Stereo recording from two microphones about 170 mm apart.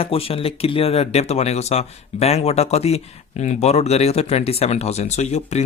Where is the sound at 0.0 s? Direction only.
35° left (ahead or behind).